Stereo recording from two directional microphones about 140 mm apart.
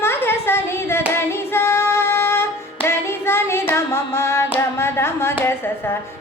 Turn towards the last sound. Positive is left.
turn(degrees=15)  # may be behind; listen again after turning